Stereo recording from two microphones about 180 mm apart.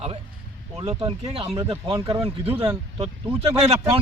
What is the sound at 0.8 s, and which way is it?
Speech, 30° right (ahead or behind).